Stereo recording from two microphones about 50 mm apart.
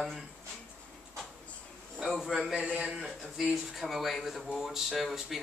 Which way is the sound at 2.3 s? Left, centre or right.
Centre.